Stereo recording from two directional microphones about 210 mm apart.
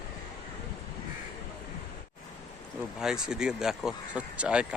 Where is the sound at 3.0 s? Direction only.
5° right (ahead or behind).